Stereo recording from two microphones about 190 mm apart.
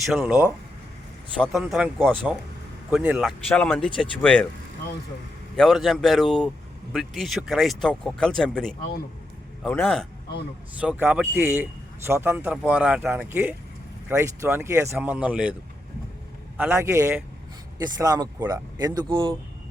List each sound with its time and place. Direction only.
0.0 s speech: 5° right (ahead or behind)
5.5 s speech: centre (ahead or behind)
16.6 s speech: 10° right (ahead or behind)